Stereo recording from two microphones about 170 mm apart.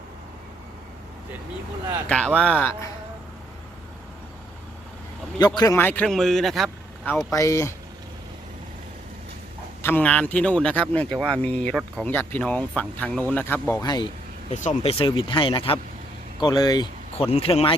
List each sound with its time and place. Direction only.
2.0 s speech: 5° left (ahead or behind)
5.5 s speech: 15° left (ahead or behind); by 6.7 s centre (ahead or behind)
7.3 s speech: 20° left (ahead or behind)
9.8 s speech: 10° left (ahead or behind)
13.8 s speech: 25° left (ahead or behind)
14.5 s speech: 45° left (ahead or behind)